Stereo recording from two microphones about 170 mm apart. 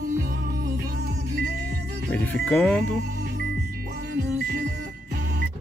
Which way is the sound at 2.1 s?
10° left (ahead or behind).